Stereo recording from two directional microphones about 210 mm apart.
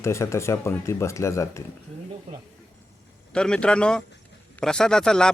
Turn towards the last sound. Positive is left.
turn(degrees=5)  # may be behind; listen again after turning